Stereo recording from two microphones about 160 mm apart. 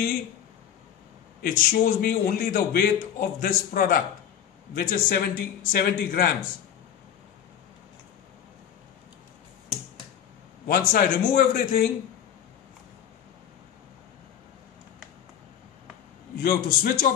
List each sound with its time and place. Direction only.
1.4 s a man's voice: 65° left (ahead or behind)
10.7 s a man's voice: 65° left (ahead or behind)
16.4 s speech: 70° left (ahead or behind)